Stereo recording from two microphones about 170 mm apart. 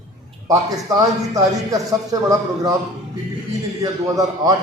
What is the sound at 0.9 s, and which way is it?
A man's voice, 20° right (ahead or behind).